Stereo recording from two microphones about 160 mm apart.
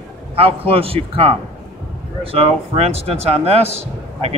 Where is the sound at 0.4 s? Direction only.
35° right (ahead or behind).